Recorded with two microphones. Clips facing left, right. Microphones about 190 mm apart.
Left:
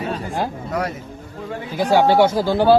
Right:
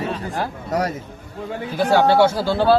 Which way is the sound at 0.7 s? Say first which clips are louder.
Right 6 dB; 40° right (ahead or behind).